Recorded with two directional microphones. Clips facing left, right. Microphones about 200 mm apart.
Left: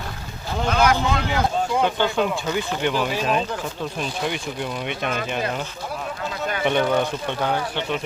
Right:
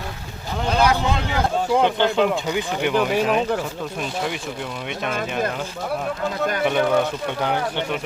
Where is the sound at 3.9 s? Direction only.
5° right (ahead or behind).